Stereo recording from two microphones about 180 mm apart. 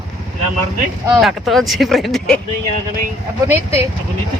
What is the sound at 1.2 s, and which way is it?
Speech, centre (ahead or behind).